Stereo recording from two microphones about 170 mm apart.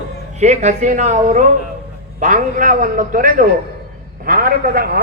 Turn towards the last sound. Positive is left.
turn(degrees=-60)  # may be behind; listen again after turning